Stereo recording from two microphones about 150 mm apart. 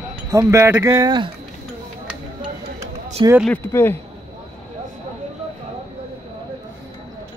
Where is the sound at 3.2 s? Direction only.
30° right (ahead or behind).